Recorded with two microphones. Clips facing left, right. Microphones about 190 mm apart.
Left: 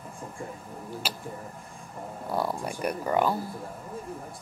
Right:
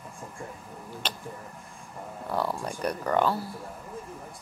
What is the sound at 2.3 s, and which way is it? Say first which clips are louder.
Speech: even; 10° left (ahead or behind).